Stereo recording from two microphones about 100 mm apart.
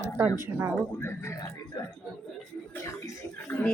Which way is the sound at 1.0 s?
25° left (ahead or behind).